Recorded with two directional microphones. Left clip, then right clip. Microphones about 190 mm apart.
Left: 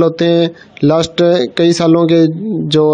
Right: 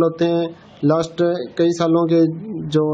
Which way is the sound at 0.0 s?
40° left (ahead or behind).